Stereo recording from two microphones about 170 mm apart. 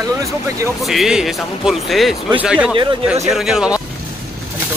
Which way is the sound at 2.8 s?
30° right (ahead or behind).